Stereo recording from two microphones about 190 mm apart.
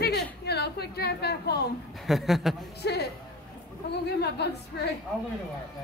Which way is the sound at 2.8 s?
60° left (ahead or behind).